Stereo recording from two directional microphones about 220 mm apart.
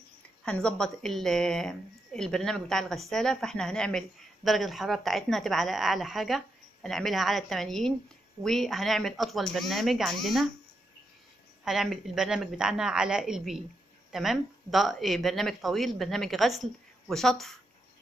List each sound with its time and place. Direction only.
0.5 s a woman's voice: 5° left (ahead or behind)
11.6 s a woman's voice: centre (ahead or behind)